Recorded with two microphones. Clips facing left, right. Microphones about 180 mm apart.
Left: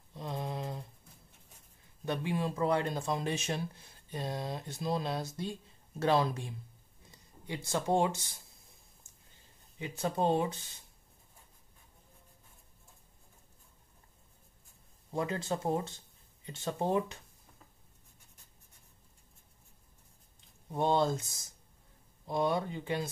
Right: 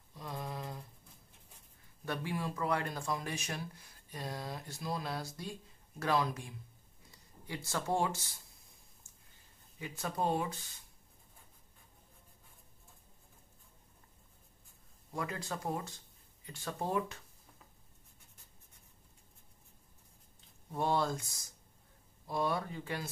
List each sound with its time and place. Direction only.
0.1 s mantra: 25° left (ahead or behind)
2.0 s speech: 20° left (ahead or behind)
9.8 s speech: 25° left (ahead or behind)
15.1 s speech: 25° left (ahead or behind)
20.3 s speech: 20° left (ahead or behind)